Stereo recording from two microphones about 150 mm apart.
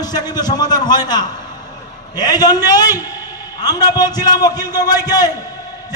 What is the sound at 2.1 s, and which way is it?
A man's voice, 25° left (ahead or behind).